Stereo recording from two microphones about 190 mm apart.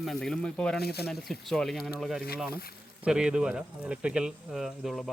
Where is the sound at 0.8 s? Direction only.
55° left (ahead or behind).